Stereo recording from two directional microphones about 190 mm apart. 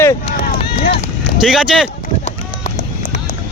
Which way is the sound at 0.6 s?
30° left (ahead or behind).